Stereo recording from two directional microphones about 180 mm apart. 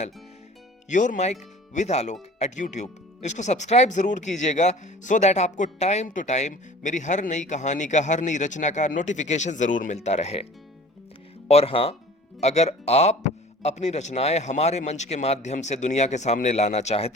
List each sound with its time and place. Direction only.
0.9 s speech: 45° left (ahead or behind)
11.4 s speech: 35° left (ahead or behind)